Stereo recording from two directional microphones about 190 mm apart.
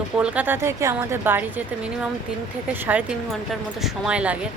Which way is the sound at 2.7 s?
10° right (ahead or behind).